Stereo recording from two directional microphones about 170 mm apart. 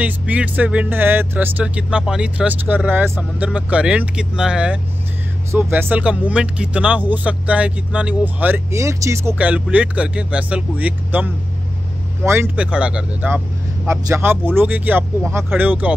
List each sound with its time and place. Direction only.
0.0 s speech: 10° right (ahead or behind)
12.3 s speech: 10° right (ahead or behind)